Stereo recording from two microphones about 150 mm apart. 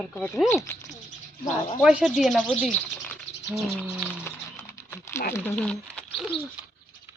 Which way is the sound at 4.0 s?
15° left (ahead or behind).